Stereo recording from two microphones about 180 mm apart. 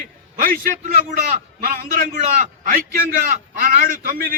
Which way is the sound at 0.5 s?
50° right (ahead or behind).